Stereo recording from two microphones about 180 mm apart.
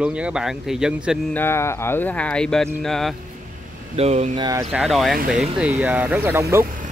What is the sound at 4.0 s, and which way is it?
Speech, 40° right (ahead or behind).